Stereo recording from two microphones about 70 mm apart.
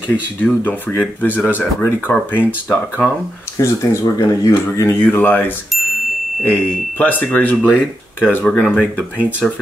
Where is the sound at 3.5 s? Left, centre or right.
Left.